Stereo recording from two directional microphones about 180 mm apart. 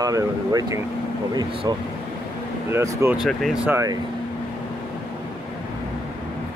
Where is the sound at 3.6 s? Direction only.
15° right (ahead or behind).